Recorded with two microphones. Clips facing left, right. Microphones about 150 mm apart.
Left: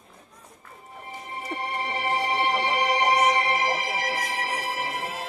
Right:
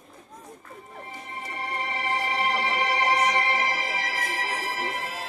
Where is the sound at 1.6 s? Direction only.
30° left (ahead or behind).